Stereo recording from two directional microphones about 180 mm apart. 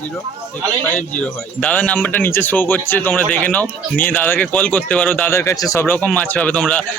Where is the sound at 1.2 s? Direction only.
5° left (ahead or behind).